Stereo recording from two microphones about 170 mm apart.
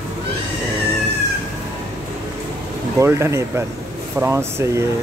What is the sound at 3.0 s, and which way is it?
Speech, 15° right (ahead or behind).